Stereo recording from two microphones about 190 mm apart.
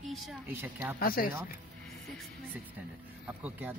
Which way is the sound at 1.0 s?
50° left (ahead or behind).